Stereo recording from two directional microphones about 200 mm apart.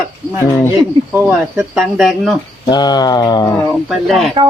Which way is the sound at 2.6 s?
20° left (ahead or behind).